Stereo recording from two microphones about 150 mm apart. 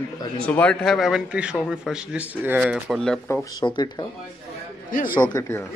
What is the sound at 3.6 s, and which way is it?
Speech, 30° left (ahead or behind).